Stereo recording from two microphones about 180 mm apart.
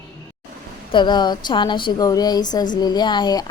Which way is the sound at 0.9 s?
25° left (ahead or behind).